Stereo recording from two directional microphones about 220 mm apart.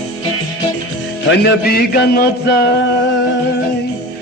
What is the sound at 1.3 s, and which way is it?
Music, 45° left (ahead or behind).